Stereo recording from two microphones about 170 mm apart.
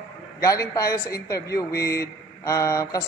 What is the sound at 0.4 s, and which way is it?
A man's voice, 20° left (ahead or behind).